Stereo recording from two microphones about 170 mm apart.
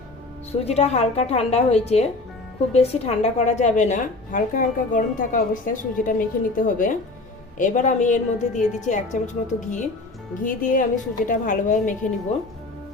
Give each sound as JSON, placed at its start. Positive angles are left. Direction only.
{"t": 0.6, "sound": "a woman's voice", "side_deg": 40}